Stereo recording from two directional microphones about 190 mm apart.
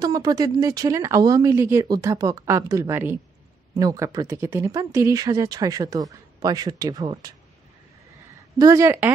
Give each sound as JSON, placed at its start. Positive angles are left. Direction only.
{"t": 0.0, "sound": "speech", "side_deg": -20}
{"t": 8.5, "sound": "speech", "side_deg": -15}